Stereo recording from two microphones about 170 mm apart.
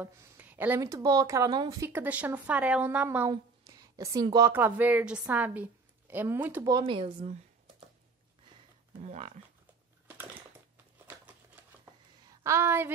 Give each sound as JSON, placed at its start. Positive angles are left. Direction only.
{"t": 0.0, "sound": "a woman's voice", "side_deg": -10}
{"t": 1.9, "sound": "a woman's voice", "side_deg": -10}
{"t": 3.3, "sound": "a sound", "side_deg": -20}
{"t": 4.5, "sound": "a woman's voice", "side_deg": -10}
{"t": 6.7, "sound": "speech", "side_deg": -30}
{"t": 9.0, "sound": "speech", "side_deg": -45}
{"t": 11.8, "sound": "a sound", "side_deg": -15}